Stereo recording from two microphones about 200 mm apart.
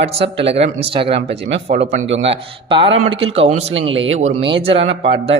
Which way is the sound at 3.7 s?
70° right (ahead or behind).